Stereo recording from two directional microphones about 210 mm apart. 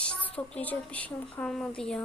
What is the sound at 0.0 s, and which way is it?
A woman's voice, 5° left (ahead or behind).